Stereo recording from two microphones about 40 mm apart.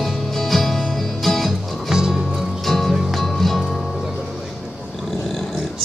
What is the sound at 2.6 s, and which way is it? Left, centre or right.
Music, centre.